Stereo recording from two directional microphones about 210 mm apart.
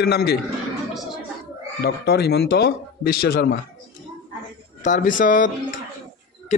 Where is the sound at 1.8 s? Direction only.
50° left (ahead or behind).